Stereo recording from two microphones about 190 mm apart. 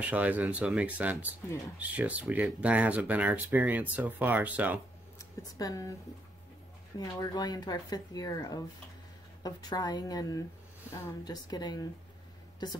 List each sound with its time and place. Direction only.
0.0 s speech: 10° right (ahead or behind)
5.2 s speech: 15° left (ahead or behind)
7.0 s speech: 20° left (ahead or behind)